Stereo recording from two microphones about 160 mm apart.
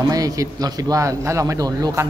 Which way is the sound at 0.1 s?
20° right (ahead or behind).